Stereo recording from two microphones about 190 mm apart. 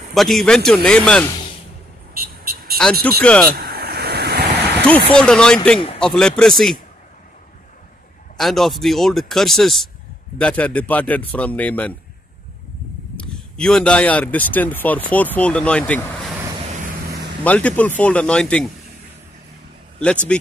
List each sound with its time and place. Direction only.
0.1 s speech: centre (ahead or behind)
2.1 s vehicle: 50° right (ahead or behind)
2.8 s speech: 5° left (ahead or behind)
3.5 s a sound: 55° right (ahead or behind)
5.1 s speech: 5° left (ahead or behind)
8.4 s speech: centre (ahead or behind)
13.1 s speech: 5° left (ahead or behind)
17.4 s speech: 10° left (ahead or behind)